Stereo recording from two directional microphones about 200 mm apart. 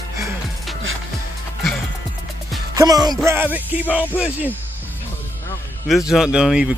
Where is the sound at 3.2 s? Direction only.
10° right (ahead or behind).